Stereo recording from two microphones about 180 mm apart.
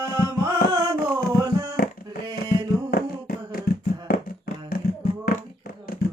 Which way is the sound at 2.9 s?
55° left (ahead or behind).